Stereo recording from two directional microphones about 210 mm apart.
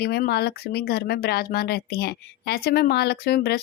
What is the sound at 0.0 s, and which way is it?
Speech, 50° left (ahead or behind).